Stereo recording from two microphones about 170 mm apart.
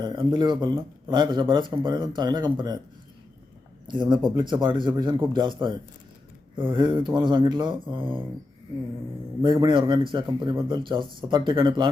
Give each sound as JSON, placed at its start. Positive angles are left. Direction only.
{"t": 0.0, "sound": "speech", "side_deg": -30}
{"t": 3.8, "sound": "speech", "side_deg": -30}
{"t": 9.4, "sound": "speech", "side_deg": -30}